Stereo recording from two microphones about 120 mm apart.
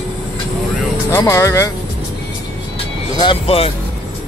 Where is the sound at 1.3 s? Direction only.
25° left (ahead or behind).